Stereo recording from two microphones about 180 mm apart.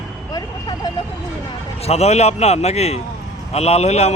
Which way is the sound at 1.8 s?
35° left (ahead or behind).